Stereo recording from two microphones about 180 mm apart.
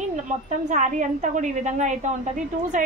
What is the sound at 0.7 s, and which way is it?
A woman's voice, 45° right (ahead or behind).